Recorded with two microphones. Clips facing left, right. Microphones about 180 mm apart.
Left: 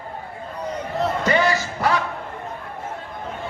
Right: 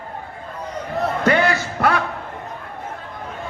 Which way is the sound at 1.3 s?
60° right (ahead or behind).